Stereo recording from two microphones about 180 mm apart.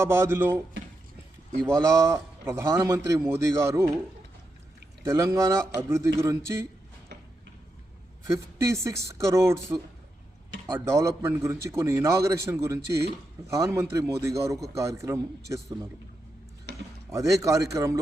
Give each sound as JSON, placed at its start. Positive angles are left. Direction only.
{"t": 0.0, "sound": "a man's voice", "side_deg": -15}
{"t": 1.6, "sound": "a man's voice", "side_deg": -15}
{"t": 5.0, "sound": "a man's voice", "side_deg": -15}
{"t": 8.3, "sound": "a man's voice", "side_deg": -15}
{"t": 17.1, "sound": "a man's voice", "side_deg": -15}